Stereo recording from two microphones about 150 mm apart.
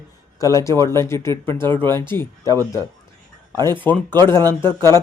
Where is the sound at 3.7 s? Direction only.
10° left (ahead or behind).